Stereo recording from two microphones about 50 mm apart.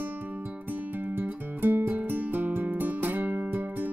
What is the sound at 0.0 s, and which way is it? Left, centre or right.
Music, right.